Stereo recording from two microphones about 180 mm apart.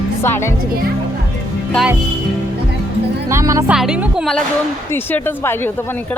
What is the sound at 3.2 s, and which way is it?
Speech, 15° right (ahead or behind).